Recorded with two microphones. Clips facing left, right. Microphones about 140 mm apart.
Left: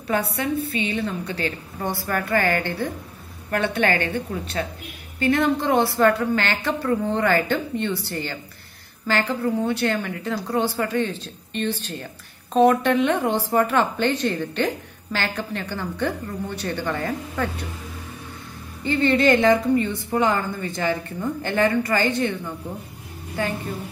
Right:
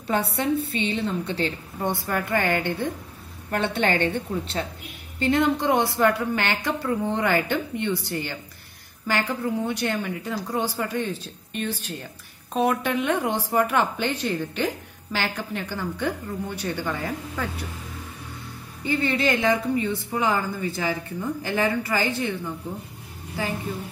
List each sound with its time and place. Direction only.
0.8 s a woman's voice: 25° right (ahead or behind); by 17.5 s 10° right (ahead or behind)
18.9 s a woman's voice: 5° right (ahead or behind)